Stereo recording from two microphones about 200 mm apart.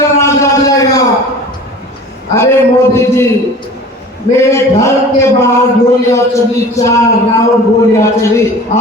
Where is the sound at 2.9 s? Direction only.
15° left (ahead or behind).